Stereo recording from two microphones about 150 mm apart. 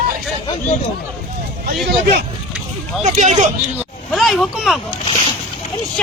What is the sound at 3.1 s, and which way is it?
Speech, 55° right (ahead or behind).